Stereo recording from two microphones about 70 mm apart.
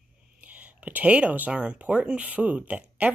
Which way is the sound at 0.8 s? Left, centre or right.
Right.